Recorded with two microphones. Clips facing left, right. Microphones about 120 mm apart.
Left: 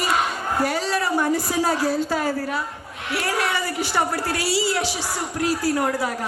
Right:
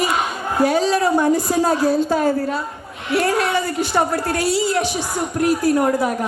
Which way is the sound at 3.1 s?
55° right (ahead or behind).